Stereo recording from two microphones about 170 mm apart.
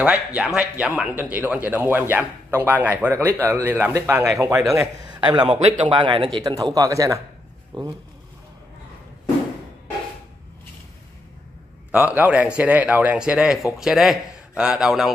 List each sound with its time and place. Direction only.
0.0 s speech: 5° right (ahead or behind); by 7.9 s 25° right (ahead or behind)
11.9 s speech: 10° right (ahead or behind)